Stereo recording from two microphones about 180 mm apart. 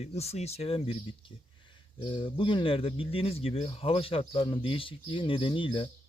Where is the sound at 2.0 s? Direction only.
30° left (ahead or behind).